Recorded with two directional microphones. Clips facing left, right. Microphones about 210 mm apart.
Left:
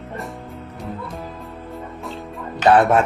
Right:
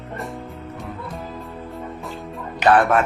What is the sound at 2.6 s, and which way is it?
Speech, 25° left (ahead or behind).